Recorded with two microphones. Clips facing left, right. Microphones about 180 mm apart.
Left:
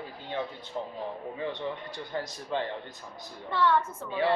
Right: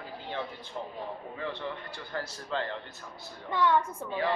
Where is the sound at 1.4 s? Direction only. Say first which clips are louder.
Left 2 dB; 20° left (ahead or behind).